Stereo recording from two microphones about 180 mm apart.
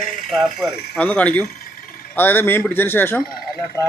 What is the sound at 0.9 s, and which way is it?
A man's voice, 10° left (ahead or behind).